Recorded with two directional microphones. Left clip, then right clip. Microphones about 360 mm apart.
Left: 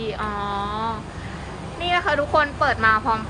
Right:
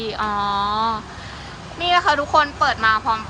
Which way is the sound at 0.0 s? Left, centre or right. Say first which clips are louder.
Right 4 dB; centre.